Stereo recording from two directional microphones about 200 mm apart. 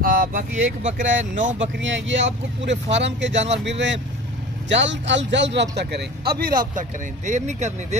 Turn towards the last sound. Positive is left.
turn(degrees=-35)  # may be behind; listen again after turning